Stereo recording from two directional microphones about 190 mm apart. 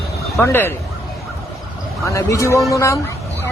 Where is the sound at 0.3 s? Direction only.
10° left (ahead or behind).